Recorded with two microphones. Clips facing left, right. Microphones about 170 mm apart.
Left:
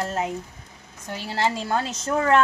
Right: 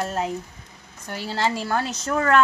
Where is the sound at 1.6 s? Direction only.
20° left (ahead or behind).